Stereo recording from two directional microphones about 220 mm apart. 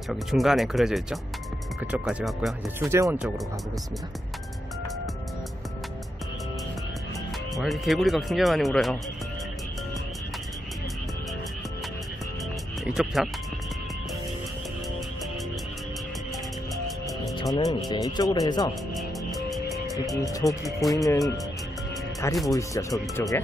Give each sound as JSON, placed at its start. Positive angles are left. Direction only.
{"t": 0.1, "sound": "speech", "side_deg": 0}
{"t": 2.8, "sound": "speech", "side_deg": -10}
{"t": 7.5, "sound": "speech", "side_deg": 0}
{"t": 12.8, "sound": "speech", "side_deg": 0}
{"t": 17.6, "sound": "speech", "side_deg": 15}
{"t": 18.9, "sound": "music", "side_deg": 0}
{"t": 20.2, "sound": "speech", "side_deg": 15}
{"t": 22.5, "sound": "speech", "side_deg": 15}